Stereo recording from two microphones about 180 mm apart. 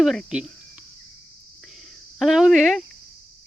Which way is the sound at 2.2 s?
Centre (ahead or behind).